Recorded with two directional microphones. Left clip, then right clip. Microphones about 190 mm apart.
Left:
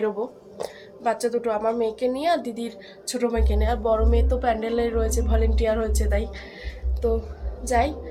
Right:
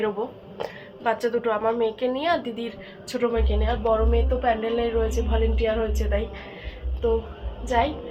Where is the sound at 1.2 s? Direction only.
15° left (ahead or behind).